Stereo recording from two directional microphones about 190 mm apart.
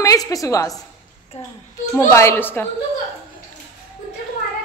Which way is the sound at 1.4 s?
35° left (ahead or behind).